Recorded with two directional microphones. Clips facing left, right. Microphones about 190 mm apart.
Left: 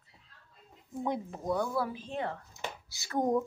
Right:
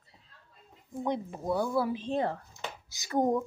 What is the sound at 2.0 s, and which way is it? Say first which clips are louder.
Speech: right 6 dB; 35° right (ahead or behind).